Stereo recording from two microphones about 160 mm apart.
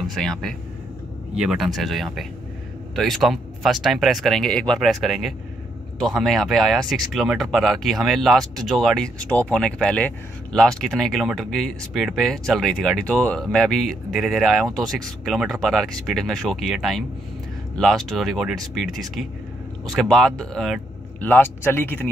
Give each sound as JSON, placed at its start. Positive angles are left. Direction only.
{"t": 0.0, "sound": "speech", "side_deg": 0}
{"t": 19.9, "sound": "speech", "side_deg": 0}